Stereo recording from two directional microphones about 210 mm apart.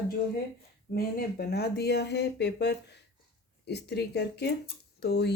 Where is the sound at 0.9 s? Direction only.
45° left (ahead or behind).